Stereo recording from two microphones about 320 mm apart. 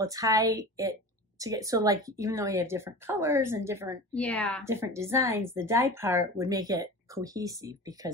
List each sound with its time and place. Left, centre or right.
0.0 s a woman's voice: centre
4.1 s a woman's voice: centre
4.6 s a woman's voice: centre